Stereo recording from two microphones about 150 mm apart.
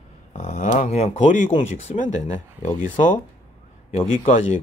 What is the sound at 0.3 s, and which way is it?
Speech, 50° left (ahead or behind).